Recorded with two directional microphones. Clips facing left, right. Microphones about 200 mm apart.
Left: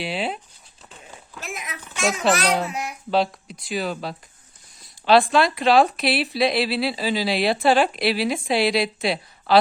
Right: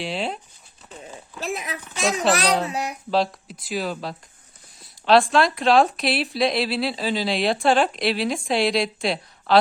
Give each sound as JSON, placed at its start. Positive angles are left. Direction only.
{"t": 0.0, "sound": "speech", "side_deg": 5}
{"t": 1.4, "sound": "speech", "side_deg": -35}
{"t": 3.1, "sound": "speech", "side_deg": 0}